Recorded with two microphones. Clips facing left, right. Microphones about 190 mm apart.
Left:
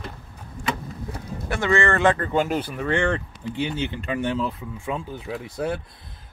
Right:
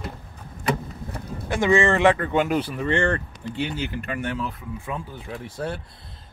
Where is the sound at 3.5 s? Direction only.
20° left (ahead or behind).